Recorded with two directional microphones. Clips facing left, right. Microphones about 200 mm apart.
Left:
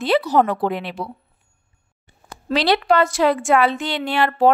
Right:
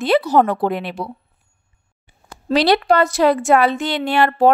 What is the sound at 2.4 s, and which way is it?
A woman's voice, 40° right (ahead or behind).